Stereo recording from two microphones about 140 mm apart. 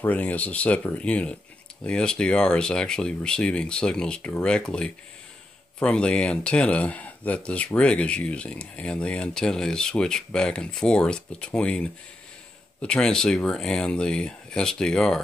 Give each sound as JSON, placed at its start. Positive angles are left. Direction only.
{"t": 0.0, "sound": "speech", "side_deg": 10}